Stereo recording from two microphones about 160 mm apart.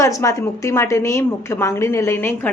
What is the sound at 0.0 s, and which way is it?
A woman's voice, 20° left (ahead or behind).